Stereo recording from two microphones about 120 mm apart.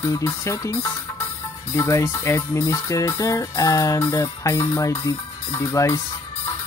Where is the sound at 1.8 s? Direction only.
25° left (ahead or behind).